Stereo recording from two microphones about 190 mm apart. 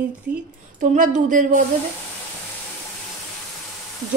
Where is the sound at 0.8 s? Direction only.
40° right (ahead or behind).